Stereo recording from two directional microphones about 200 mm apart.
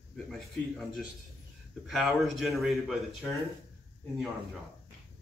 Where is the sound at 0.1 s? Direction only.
Centre (ahead or behind).